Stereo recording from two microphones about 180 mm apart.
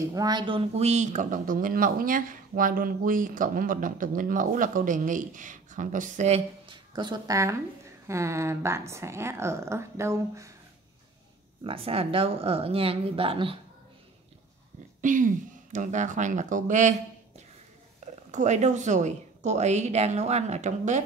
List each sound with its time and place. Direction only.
0.1 s a woman's voice: 20° right (ahead or behind)
11.6 s speech: 30° right (ahead or behind)
15.0 s speech: 45° right (ahead or behind)
18.0 s speech: 40° right (ahead or behind)